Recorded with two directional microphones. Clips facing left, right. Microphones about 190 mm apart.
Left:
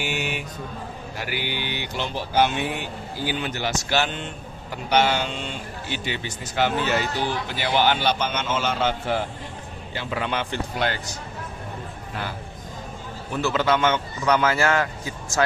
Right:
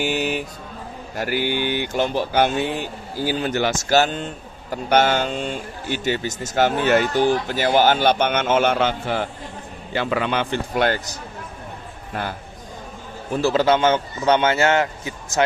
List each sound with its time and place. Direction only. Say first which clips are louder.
0.0 s mantra: right 6 dB; 40° right (ahead or behind)
1.1 s speech: right 8 dB; 45° right (ahead or behind)
2.8 s a man's voice: right 4 dB; 40° right (ahead or behind)
3.5 s speech: right 9 dB; 55° right (ahead or behind)
9.9 s a man's voice: right 6 dB; 80° right
10.8 s speech: right 6 dB; 50° right (ahead or behind)
13.3 s a man's voice: right 5 dB; 35° right (ahead or behind)